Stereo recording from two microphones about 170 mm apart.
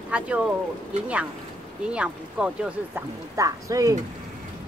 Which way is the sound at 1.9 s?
5° right (ahead or behind).